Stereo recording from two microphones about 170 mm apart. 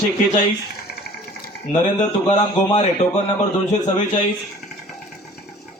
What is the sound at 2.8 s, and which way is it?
A man's voice, 45° left (ahead or behind).